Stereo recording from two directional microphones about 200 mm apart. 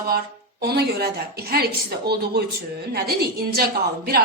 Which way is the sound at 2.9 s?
50° right (ahead or behind).